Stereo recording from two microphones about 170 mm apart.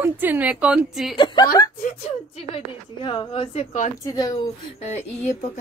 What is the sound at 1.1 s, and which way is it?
A woman's voice, 25° left (ahead or behind).